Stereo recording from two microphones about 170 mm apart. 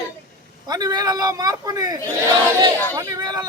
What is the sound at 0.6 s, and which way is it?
A man's voice, 25° right (ahead or behind).